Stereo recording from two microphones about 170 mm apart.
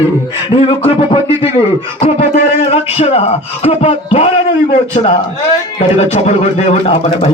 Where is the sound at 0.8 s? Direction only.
35° left (ahead or behind).